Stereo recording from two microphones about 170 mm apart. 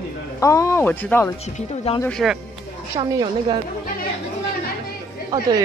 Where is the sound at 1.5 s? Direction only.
35° left (ahead or behind).